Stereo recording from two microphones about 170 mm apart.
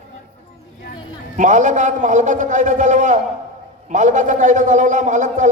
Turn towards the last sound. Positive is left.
turn(degrees=-45)  # may be behind; listen again after turning